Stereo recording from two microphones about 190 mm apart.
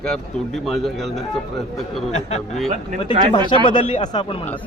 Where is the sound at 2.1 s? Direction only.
35° left (ahead or behind).